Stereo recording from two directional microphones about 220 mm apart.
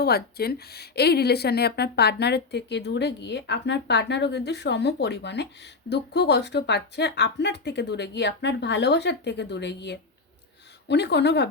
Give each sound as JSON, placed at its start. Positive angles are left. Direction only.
{"t": 0.0, "sound": "speech", "side_deg": 45}